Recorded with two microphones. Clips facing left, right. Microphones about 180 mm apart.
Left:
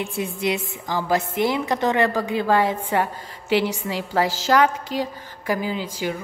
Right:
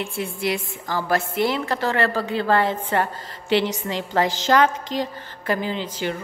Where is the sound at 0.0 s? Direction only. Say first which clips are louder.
Left 1 dB; 20° left (ahead or behind).